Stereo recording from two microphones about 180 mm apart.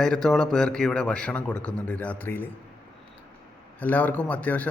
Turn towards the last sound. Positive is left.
turn(degrees=10)  # may be behind; listen again after turning